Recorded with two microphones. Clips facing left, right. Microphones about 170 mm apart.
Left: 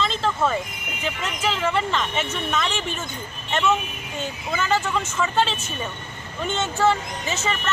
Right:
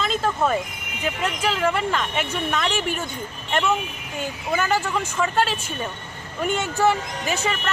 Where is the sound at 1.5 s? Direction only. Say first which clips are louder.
Even; 5° right (ahead or behind).